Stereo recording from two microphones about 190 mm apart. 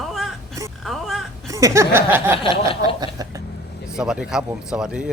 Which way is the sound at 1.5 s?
15° right (ahead or behind).